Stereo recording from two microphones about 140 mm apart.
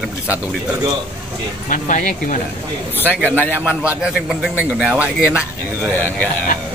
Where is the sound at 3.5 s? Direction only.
10° right (ahead or behind).